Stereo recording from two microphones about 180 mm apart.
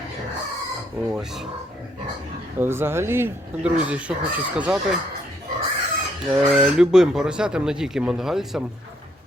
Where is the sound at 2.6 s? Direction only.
15° right (ahead or behind).